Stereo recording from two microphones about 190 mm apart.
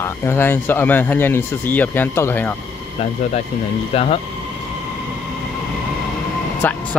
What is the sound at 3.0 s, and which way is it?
Speech, 35° left (ahead or behind).